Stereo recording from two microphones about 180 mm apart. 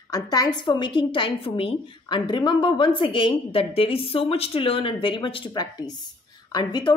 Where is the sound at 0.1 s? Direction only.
20° left (ahead or behind).